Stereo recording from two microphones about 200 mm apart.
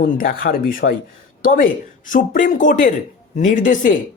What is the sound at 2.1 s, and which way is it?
Speech, 40° left (ahead or behind).